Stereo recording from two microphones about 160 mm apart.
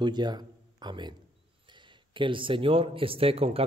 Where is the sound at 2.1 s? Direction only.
30° right (ahead or behind).